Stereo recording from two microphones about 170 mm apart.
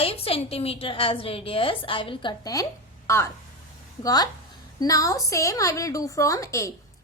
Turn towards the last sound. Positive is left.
turn(degrees=20)  # may be behind; listen again after turning